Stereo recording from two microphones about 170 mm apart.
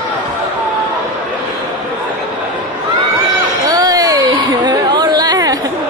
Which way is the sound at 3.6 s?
20° right (ahead or behind).